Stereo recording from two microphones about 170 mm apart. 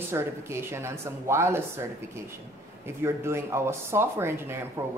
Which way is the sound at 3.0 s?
15° right (ahead or behind).